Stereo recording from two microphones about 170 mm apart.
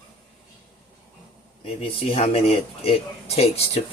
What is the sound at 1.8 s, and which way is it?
Speech, 35° left (ahead or behind).